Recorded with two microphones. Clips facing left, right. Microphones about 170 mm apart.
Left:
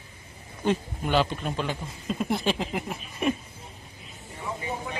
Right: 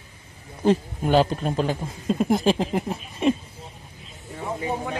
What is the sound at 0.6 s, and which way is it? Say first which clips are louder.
A man's voice: right 6 dB; 40° right (ahead or behind).